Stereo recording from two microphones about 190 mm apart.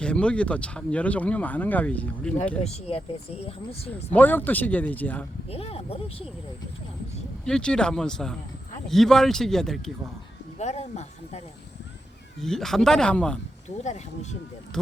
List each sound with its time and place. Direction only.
0.0 s speech: 5° left (ahead or behind)
2.6 s speech: 30° left (ahead or behind)
4.1 s speech: 10° left (ahead or behind)
5.5 s speech: 30° left (ahead or behind)
7.4 s speech: 5° left (ahead or behind)
10.6 s speech: 35° left (ahead or behind)
12.4 s speech: centre (ahead or behind)
13.8 s speech: 35° left (ahead or behind)